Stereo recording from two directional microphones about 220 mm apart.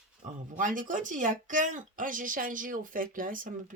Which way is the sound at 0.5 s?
35° right (ahead or behind).